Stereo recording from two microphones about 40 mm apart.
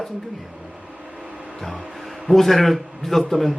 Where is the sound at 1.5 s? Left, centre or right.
Centre.